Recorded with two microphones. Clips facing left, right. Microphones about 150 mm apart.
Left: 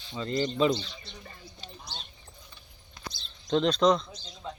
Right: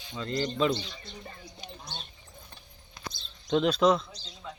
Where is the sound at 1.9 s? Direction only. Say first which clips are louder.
Right 1 dB; 55° right (ahead or behind).